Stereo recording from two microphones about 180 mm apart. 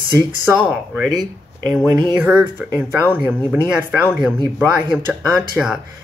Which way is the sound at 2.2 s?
10° right (ahead or behind).